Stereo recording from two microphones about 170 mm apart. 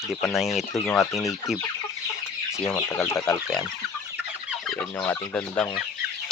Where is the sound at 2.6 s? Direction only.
15° left (ahead or behind).